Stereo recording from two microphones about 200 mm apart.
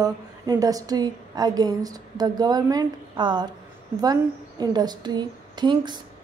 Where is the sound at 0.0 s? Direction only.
15° right (ahead or behind).